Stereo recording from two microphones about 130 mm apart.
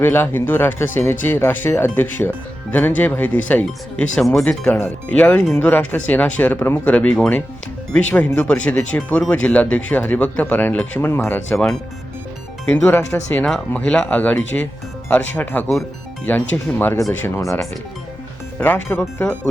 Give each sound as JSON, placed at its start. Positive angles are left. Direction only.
{"t": 0.0, "sound": "speech", "side_deg": 15}
{"t": 18.6, "sound": "speech", "side_deg": 15}